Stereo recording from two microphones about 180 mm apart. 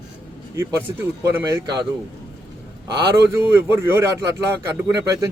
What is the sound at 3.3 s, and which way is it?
A man's voice, 15° right (ahead or behind).